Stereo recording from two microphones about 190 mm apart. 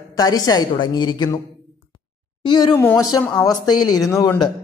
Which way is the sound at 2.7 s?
10° left (ahead or behind).